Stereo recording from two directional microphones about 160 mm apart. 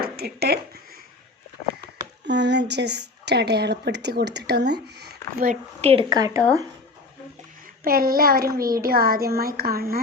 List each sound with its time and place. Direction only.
0.0 s speech: 80° right
2.2 s a woman's voice: 90° right
5.8 s speech: 40° right (ahead or behind)
6.1 s speech: 20° right (ahead or behind)
7.9 s a child's voice: 65° right (ahead or behind)